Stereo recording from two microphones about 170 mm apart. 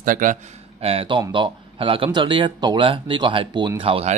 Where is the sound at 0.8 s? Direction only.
35° right (ahead or behind).